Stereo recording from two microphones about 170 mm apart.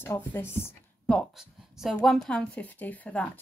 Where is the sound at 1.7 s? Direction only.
Centre (ahead or behind).